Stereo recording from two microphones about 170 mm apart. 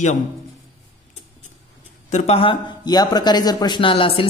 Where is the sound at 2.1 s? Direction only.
35° left (ahead or behind).